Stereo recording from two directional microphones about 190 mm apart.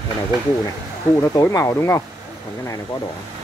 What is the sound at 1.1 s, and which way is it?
Speech, 15° left (ahead or behind).